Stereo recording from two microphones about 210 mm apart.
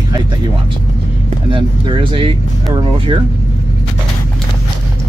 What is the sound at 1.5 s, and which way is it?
Speech, 25° right (ahead or behind).